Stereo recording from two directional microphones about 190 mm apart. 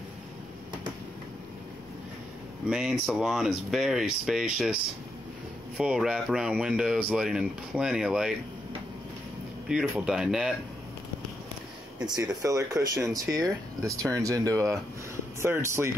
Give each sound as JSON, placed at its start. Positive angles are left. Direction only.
{"t": 2.7, "sound": "speech", "side_deg": -5}
{"t": 5.8, "sound": "speech", "side_deg": -5}
{"t": 9.7, "sound": "speech", "side_deg": -5}
{"t": 12.2, "sound": "speech", "side_deg": -20}